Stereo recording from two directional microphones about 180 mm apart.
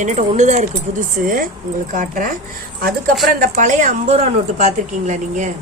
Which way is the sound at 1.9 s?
50° right (ahead or behind).